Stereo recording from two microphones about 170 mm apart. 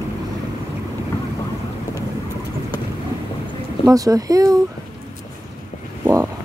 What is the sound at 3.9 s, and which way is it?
Speech, 20° right (ahead or behind).